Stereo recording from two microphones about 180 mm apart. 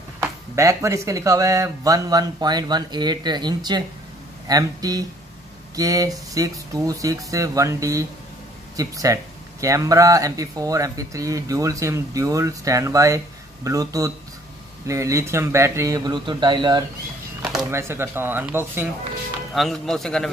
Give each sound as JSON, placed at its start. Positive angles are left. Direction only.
{"t": 0.2, "sound": "speech", "side_deg": -15}
{"t": 19.5, "sound": "speech", "side_deg": 0}